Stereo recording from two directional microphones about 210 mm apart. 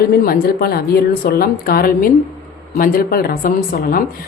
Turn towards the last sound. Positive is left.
turn(degrees=45)  # may be behind; listen again after turning